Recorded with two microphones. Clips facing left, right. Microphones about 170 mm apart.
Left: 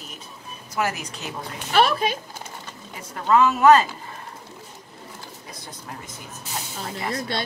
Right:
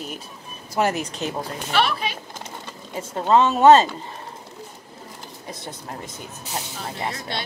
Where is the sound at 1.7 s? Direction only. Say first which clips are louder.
Left 3 dB; 45° left (ahead or behind).